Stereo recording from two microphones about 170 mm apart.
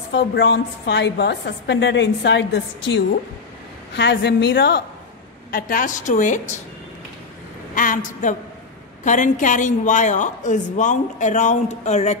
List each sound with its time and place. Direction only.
0.1 s a woman's voice: 85° left
5.5 s a woman's voice: 55° left (ahead or behind)
7.7 s a woman's voice: 50° left (ahead or behind)